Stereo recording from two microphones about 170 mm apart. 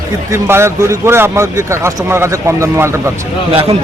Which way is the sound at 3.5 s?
35° right (ahead or behind).